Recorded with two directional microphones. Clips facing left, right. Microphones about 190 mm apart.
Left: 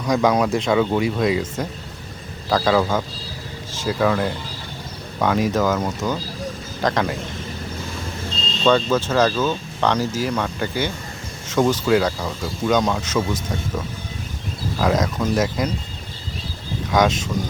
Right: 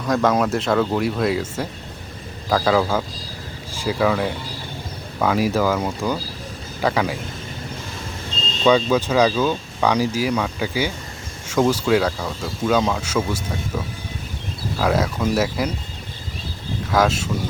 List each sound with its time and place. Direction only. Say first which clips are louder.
0.0 s speech: left 1 dB; centre (ahead or behind)
8.6 s speech: right 1 dB; 10° right (ahead or behind)
16.9 s speech: left 1 dB; 5° right (ahead or behind)